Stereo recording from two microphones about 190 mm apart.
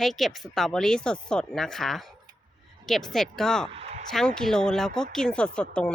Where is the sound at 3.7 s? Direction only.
35° right (ahead or behind).